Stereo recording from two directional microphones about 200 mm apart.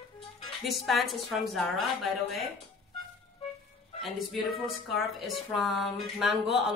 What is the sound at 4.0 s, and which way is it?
Speech, centre (ahead or behind).